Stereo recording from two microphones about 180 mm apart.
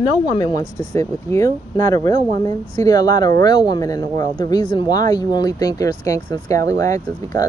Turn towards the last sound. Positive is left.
turn(degrees=20)  # may be behind; listen again after turning